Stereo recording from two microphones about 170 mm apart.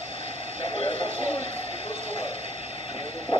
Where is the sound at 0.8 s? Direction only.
45° right (ahead or behind).